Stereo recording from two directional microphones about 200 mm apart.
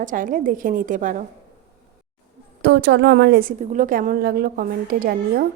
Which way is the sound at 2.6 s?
60° right (ahead or behind).